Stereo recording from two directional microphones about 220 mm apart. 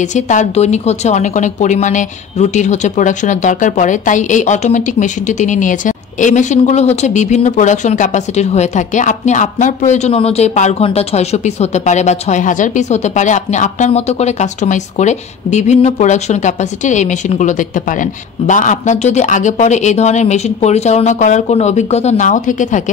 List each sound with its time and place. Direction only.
0.0 s speech: 35° left (ahead or behind)